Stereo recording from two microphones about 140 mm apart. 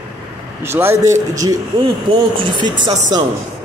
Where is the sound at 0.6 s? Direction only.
15° right (ahead or behind).